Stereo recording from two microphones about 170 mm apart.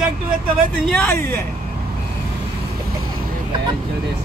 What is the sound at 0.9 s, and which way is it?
Speech, 5° left (ahead or behind).